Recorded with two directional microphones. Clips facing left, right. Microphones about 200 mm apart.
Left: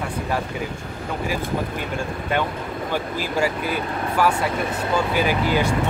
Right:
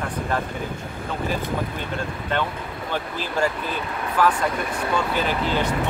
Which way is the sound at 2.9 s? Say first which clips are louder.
Left 2 dB; 10° left (ahead or behind).